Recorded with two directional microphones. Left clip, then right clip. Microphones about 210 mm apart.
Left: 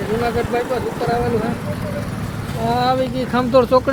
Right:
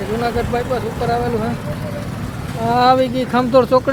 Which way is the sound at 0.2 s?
15° right (ahead or behind).